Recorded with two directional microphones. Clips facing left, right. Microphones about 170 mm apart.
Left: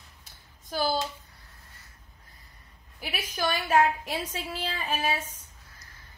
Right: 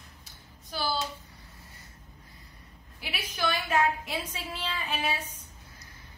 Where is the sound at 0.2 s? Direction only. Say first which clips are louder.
Right 3 dB; 45° left (ahead or behind).